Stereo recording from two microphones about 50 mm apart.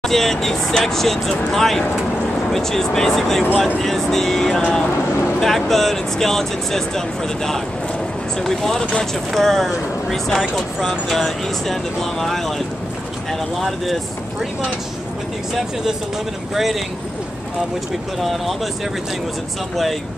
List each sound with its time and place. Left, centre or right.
0.0 s speech: centre
4.6 s speech: left
5.4 s speech: centre
8.5 s speech: centre